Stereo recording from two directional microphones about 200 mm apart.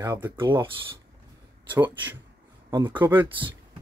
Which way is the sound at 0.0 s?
15° right (ahead or behind).